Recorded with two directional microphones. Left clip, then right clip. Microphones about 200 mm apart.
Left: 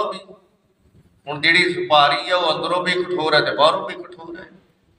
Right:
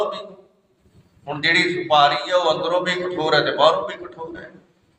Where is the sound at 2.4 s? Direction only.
25° left (ahead or behind).